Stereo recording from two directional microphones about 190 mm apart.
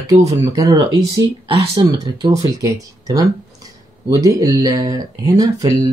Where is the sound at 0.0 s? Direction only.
15° right (ahead or behind).